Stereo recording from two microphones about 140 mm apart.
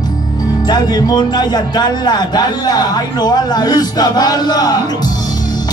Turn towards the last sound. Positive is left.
turn(degrees=30)  # may be behind; listen again after turning